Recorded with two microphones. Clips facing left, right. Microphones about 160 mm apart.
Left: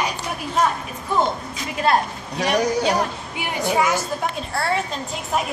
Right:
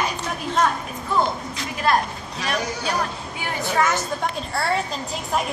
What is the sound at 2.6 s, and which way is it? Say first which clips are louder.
Speech: left 7 dB; 35° left (ahead or behind).